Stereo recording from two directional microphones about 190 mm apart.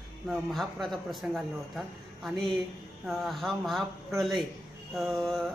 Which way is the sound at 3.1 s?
Centre (ahead or behind).